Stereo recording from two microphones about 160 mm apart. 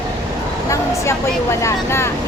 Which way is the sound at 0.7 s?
15° left (ahead or behind).